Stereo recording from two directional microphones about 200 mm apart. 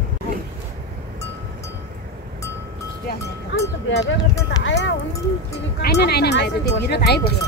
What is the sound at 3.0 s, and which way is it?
Music, 55° left (ahead or behind).